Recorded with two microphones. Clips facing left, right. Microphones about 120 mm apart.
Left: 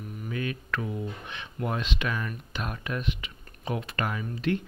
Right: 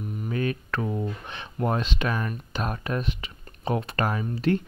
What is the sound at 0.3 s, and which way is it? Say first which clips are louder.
Speech: right 4 dB; 40° right (ahead or behind).